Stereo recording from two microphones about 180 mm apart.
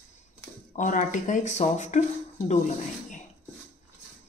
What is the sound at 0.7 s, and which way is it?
Speech, 45° left (ahead or behind).